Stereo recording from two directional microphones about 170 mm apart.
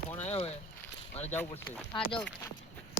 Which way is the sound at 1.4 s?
10° left (ahead or behind).